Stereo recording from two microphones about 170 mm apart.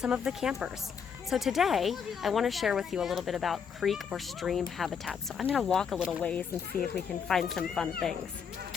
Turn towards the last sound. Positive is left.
turn(degrees=0)  # may be behind; listen again after turning